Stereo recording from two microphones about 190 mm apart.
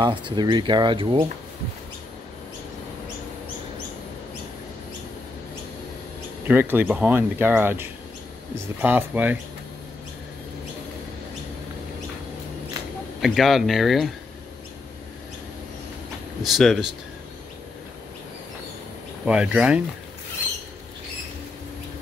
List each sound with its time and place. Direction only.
0.0 s speech: 25° right (ahead or behind)
6.4 s speech: 10° right (ahead or behind)
13.2 s speech: centre (ahead or behind)
16.4 s speech: centre (ahead or behind)
19.2 s speech: 5° right (ahead or behind)